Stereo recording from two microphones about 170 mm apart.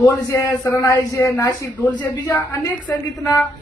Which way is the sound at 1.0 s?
20° left (ahead or behind).